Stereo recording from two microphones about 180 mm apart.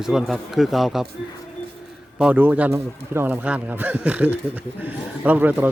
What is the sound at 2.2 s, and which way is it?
A man's voice, 10° right (ahead or behind).